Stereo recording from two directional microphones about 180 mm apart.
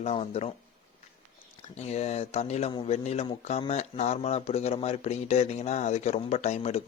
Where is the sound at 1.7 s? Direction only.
35° left (ahead or behind).